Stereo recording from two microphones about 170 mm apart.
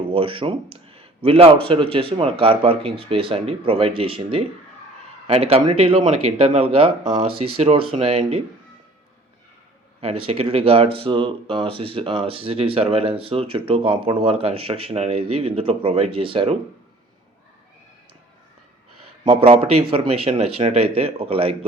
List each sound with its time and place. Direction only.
0.1 s speech: 30° right (ahead or behind)
10.0 s speech: 35° right (ahead or behind)
19.2 s speech: 35° right (ahead or behind)